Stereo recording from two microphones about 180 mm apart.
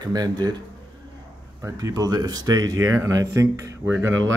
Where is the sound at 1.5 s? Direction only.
15° right (ahead or behind).